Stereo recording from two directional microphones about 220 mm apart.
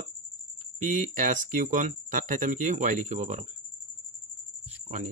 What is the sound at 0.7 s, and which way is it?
Speech, 35° right (ahead or behind).